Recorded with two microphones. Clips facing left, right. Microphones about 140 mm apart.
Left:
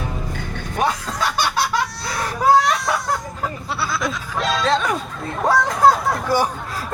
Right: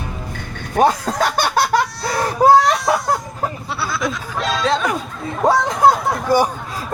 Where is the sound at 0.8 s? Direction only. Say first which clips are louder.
Right 6 dB; 40° right (ahead or behind).